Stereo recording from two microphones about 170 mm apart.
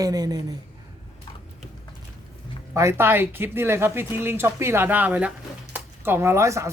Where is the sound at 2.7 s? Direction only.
15° right (ahead or behind).